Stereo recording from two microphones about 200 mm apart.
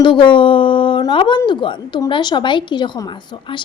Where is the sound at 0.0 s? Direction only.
25° left (ahead or behind).